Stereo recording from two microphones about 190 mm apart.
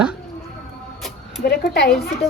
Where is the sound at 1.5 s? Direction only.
60° left (ahead or behind).